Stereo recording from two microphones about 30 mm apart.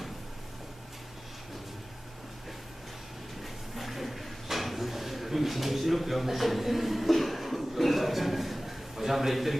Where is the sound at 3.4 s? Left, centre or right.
Centre.